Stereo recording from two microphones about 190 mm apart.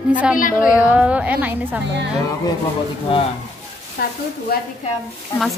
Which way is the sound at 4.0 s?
55° left (ahead or behind).